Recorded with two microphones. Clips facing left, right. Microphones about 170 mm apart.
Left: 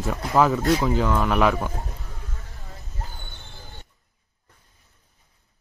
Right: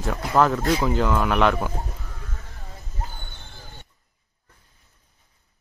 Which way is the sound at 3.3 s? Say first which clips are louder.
Even; 20° left (ahead or behind).